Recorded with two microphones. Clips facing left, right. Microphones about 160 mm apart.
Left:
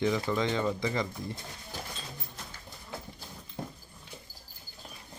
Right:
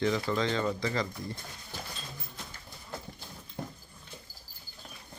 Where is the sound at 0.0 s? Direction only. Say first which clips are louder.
Even; 15° left (ahead or behind).